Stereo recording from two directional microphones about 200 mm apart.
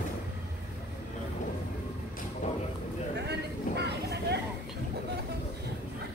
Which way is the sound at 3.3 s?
55° right (ahead or behind).